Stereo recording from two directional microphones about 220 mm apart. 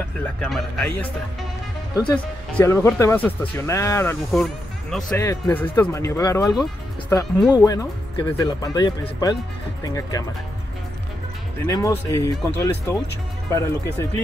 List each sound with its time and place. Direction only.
0.4 s speech: centre (ahead or behind)
11.6 s speech: 15° left (ahead or behind)